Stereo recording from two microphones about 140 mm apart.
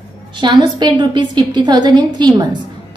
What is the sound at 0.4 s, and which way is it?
A woman's voice, 30° right (ahead or behind).